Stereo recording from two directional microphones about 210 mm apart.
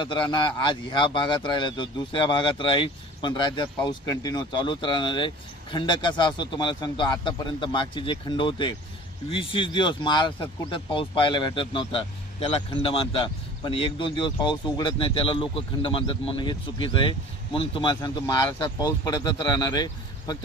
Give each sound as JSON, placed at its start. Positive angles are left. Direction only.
{"t": 0.0, "sound": "a man's voice", "side_deg": 20}